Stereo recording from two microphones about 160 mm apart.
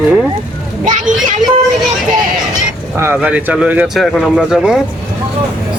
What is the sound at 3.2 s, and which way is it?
Speech, 10° right (ahead or behind).